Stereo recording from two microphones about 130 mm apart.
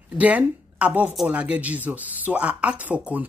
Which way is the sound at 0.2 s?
10° right (ahead or behind).